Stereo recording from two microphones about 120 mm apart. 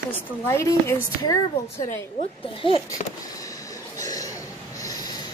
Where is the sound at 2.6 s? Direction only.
45° left (ahead or behind).